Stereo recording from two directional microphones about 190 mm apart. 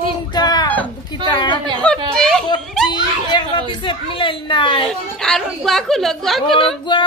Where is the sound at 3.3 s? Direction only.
25° left (ahead or behind).